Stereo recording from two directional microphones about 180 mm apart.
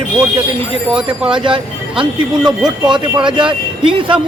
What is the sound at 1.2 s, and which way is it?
Speech, 30° right (ahead or behind).